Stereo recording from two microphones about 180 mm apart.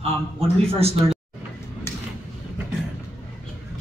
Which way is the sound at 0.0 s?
35° right (ahead or behind).